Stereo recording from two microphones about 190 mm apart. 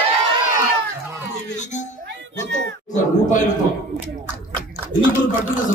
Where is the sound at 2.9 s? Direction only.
40° left (ahead or behind).